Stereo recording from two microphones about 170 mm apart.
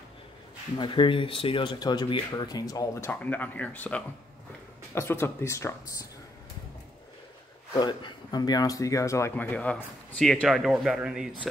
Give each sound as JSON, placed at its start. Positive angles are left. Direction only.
{"t": 0.7, "sound": "speech", "side_deg": 30}
{"t": 7.7, "sound": "speech", "side_deg": 25}